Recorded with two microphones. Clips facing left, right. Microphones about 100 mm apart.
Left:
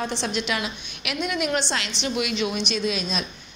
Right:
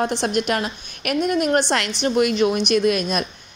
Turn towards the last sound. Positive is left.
turn(degrees=-55)  # may be behind; listen again after turning